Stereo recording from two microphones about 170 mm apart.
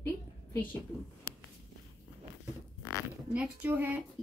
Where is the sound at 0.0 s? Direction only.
10° left (ahead or behind).